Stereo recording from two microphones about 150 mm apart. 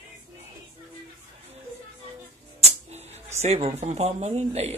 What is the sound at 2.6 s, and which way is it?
Music, 45° right (ahead or behind).